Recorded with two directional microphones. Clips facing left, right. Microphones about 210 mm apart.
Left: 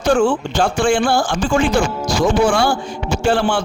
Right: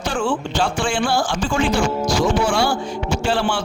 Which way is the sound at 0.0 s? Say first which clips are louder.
Left 7 dB; 45° left (ahead or behind).